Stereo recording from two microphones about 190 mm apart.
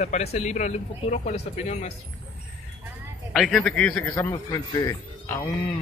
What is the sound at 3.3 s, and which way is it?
Speech, centre (ahead or behind).